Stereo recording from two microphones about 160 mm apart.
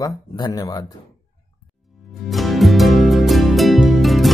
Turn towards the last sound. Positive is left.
turn(degrees=0)  # may be behind; listen again after turning